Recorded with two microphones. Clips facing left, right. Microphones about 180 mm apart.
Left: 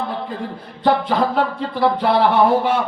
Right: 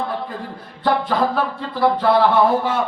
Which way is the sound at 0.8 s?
20° left (ahead or behind).